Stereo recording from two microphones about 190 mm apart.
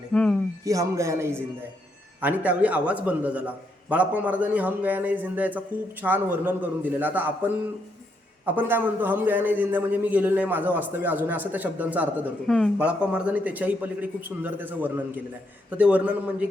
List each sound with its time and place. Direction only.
0.1 s a sound: 5° left (ahead or behind)
0.6 s a man's voice: 15° right (ahead or behind)
12.5 s a man's voice: 5° left (ahead or behind)